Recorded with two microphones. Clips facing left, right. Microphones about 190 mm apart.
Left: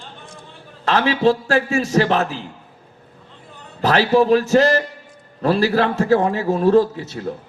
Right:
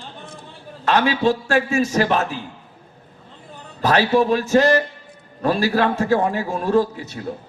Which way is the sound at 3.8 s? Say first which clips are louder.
Left 2 dB; 35° left (ahead or behind).